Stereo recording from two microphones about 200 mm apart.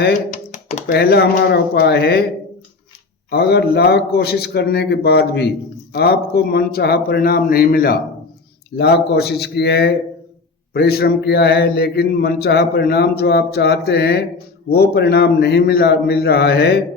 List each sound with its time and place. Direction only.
0.3 s computer keyboard: 35° left (ahead or behind)
0.9 s a man's voice: 55° left (ahead or behind)
3.2 s a man's voice: 55° left (ahead or behind)